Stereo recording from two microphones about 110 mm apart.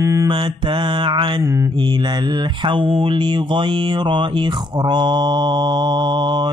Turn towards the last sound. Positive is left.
turn(degrees=-40)  # may be behind; listen again after turning